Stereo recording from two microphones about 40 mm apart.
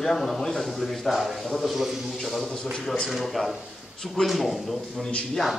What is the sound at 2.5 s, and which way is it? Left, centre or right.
Speech, centre.